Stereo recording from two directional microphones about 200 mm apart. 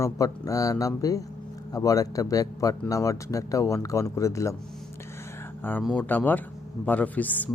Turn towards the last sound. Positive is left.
turn(degrees=10)  # may be behind; listen again after turning